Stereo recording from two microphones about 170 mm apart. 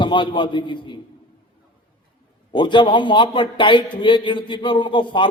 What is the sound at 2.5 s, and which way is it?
A man's voice, 30° left (ahead or behind).